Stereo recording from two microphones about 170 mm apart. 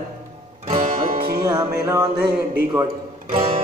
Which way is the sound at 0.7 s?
50° right (ahead or behind).